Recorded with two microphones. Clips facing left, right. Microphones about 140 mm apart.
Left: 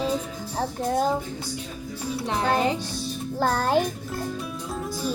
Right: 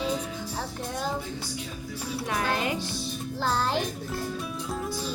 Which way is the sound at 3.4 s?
50° left (ahead or behind).